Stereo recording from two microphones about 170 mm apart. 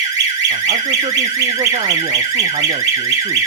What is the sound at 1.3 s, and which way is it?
Speech, 20° right (ahead or behind).